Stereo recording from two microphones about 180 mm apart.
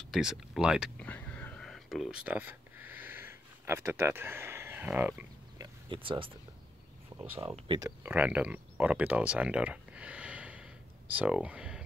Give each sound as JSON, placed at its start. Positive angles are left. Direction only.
{"t": 0.1, "sound": "speech", "side_deg": -5}
{"t": 1.0, "sound": "a sound", "side_deg": 10}
{"t": 5.6, "sound": "a sound", "side_deg": -30}
{"t": 7.2, "sound": "speech", "side_deg": -15}
{"t": 7.6, "sound": "speech", "side_deg": -25}
{"t": 8.0, "sound": "speech", "side_deg": -10}